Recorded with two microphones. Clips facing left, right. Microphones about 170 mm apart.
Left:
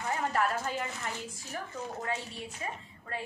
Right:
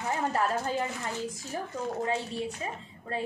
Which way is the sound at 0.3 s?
30° right (ahead or behind).